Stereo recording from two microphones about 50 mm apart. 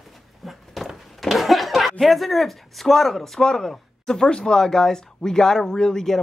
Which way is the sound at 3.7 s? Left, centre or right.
Centre.